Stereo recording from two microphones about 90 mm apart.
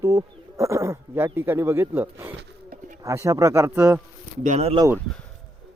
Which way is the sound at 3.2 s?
35° right (ahead or behind).